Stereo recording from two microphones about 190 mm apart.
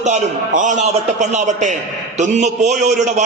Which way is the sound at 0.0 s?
40° right (ahead or behind).